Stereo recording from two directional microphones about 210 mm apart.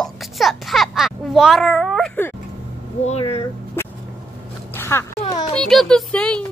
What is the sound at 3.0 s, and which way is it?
Speech, 30° left (ahead or behind).